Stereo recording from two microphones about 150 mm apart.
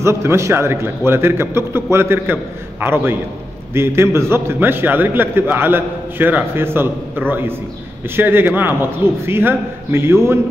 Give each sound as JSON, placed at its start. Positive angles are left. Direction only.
{"t": 0.0, "sound": "a man's voice", "side_deg": -15}